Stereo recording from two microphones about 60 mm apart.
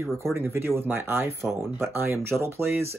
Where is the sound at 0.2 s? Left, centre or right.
Right.